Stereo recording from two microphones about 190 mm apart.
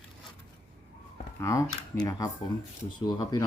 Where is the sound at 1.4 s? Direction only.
15° left (ahead or behind).